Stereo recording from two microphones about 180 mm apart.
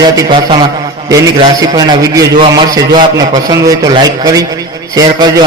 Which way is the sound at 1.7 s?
20° right (ahead or behind).